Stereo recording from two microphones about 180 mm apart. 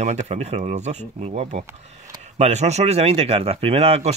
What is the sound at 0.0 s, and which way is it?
Speech, 40° right (ahead or behind).